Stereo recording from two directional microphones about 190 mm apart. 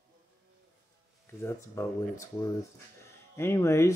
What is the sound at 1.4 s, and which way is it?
Speech, 15° left (ahead or behind).